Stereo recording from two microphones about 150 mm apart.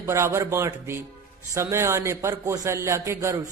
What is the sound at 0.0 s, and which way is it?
A man's voice, 15° right (ahead or behind).